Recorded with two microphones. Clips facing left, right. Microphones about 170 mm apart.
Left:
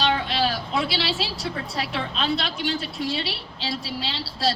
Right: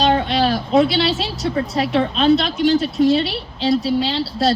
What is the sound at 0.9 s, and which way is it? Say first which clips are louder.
A woman's voice: right 7 dB; 40° right (ahead or behind).